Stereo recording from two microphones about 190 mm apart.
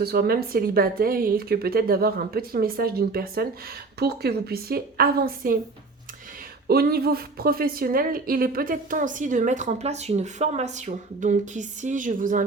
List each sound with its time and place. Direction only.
0.0 s a woman's voice: 55° right (ahead or behind)
6.7 s a woman's voice: 55° right (ahead or behind)